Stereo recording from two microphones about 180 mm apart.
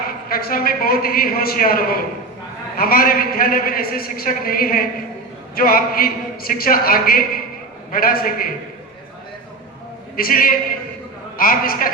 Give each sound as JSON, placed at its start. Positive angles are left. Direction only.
{"t": 0.1, "sound": "a man's voice", "side_deg": 55}
{"t": 10.2, "sound": "a man's voice", "side_deg": 55}